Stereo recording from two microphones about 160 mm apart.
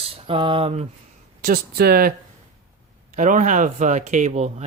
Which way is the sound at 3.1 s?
50° right (ahead or behind).